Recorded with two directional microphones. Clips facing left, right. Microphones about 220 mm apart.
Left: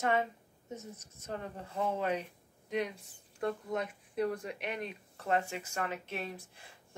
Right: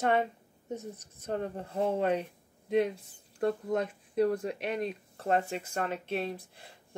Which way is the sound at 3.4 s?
40° right (ahead or behind).